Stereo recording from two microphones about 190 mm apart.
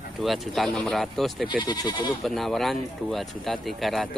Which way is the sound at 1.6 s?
20° left (ahead or behind).